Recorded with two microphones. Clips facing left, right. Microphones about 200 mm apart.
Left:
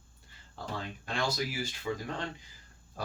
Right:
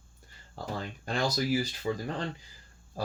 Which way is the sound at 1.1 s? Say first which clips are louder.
Right 5 dB; 40° right (ahead or behind).